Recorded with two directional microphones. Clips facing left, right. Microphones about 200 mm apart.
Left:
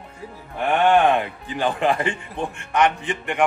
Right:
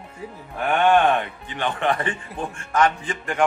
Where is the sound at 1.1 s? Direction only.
35° left (ahead or behind).